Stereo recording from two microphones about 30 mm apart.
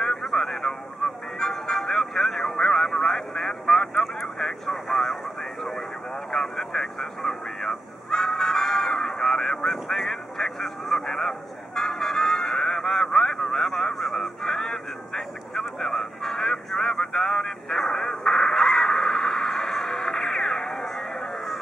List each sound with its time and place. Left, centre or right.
0.0 s music: centre
4.4 s vehicle: centre
17.1 s a sound: centre